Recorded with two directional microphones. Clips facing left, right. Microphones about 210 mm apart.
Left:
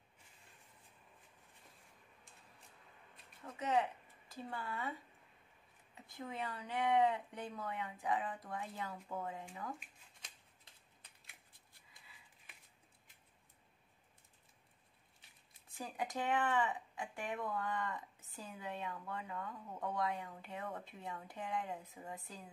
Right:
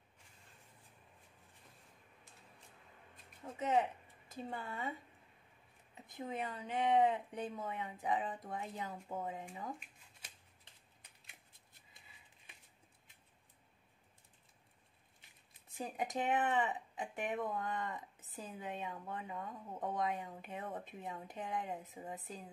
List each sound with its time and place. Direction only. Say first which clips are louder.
3.4 s speech: right 2 dB; 20° right (ahead or behind)
5.9 s speech: right 3 dB; 20° right (ahead or behind)
15.7 s speech: right 2 dB; 20° right (ahead or behind)